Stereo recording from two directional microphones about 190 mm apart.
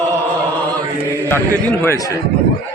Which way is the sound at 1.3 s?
10° left (ahead or behind).